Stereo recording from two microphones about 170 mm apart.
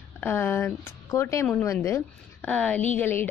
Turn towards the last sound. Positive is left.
turn(degrees=15)  # may be behind; listen again after turning